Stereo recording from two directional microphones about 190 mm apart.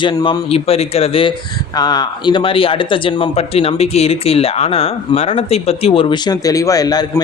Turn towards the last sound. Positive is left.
turn(degrees=20)  # may be behind; listen again after turning